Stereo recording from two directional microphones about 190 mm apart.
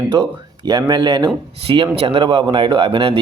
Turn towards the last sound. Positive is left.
turn(degrees=-30)  # may be behind; listen again after turning